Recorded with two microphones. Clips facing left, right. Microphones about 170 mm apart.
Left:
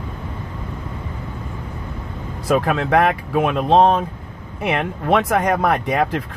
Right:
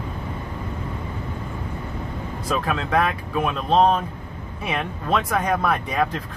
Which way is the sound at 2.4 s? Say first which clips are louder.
Left 7 dB; 65° left (ahead or behind).